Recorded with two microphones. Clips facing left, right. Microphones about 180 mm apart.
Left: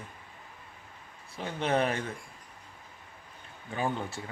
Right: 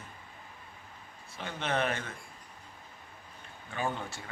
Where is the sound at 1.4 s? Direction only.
35° left (ahead or behind).